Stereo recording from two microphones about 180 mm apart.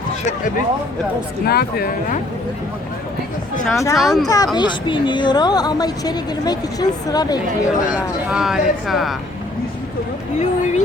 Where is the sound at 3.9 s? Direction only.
Centre (ahead or behind).